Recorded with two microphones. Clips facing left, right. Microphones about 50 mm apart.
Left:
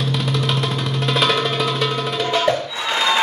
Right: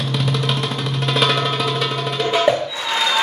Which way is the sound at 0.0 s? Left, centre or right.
Centre.